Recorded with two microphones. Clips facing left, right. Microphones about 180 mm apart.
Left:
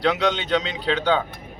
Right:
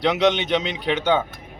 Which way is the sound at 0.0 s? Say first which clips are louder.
Right 3 dB; 20° right (ahead or behind).